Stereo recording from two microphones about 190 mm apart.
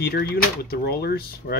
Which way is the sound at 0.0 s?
55° left (ahead or behind).